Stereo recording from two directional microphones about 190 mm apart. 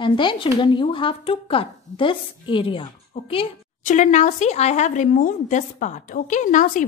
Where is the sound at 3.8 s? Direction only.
40° left (ahead or behind).